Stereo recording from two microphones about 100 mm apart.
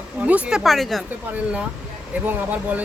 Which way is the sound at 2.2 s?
15° right (ahead or behind).